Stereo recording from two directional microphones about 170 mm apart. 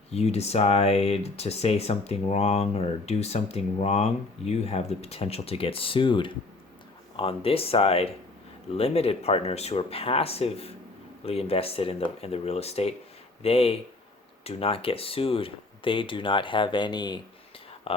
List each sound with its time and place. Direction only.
0.1 s speech: 40° left (ahead or behind)